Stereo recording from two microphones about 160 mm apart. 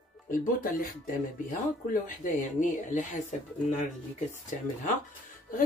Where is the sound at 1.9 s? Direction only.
55° left (ahead or behind).